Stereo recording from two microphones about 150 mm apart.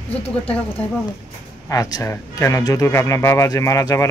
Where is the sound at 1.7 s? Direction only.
20° left (ahead or behind).